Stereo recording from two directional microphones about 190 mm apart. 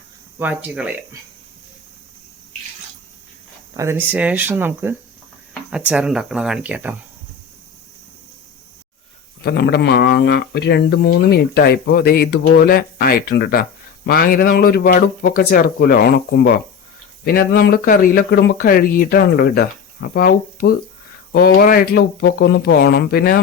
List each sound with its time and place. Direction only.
0.3 s speech: 10° right (ahead or behind)
3.8 s speech: 10° right (ahead or behind)
9.4 s speech: 60° left (ahead or behind)